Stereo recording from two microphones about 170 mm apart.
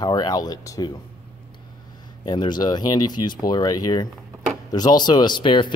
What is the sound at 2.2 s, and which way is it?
Speech, 25° left (ahead or behind).